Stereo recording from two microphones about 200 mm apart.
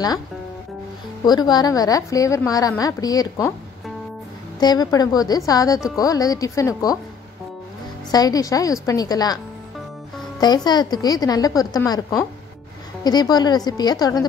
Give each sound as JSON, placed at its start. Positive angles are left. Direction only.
{"t": 1.2, "sound": "a woman's voice", "side_deg": 20}
{"t": 4.6, "sound": "a woman's voice", "side_deg": 20}
{"t": 8.1, "sound": "a woman's voice", "side_deg": 20}
{"t": 10.4, "sound": "a woman's voice", "side_deg": 20}